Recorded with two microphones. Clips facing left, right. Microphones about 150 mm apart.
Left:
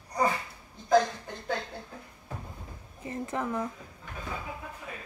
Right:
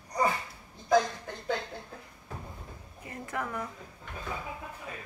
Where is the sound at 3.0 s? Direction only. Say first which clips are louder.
Left 4 dB; 25° left (ahead or behind).